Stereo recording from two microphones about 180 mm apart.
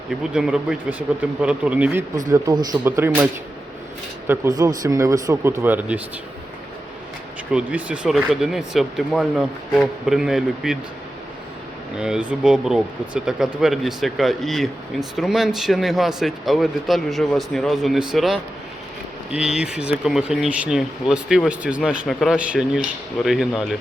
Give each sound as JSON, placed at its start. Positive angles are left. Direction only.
{"t": 0.1, "sound": "speech", "side_deg": -5}
{"t": 2.3, "sound": "speech", "side_deg": -20}
{"t": 4.3, "sound": "speech", "side_deg": -20}
{"t": 7.5, "sound": "speech", "side_deg": -5}
{"t": 11.9, "sound": "speech", "side_deg": -5}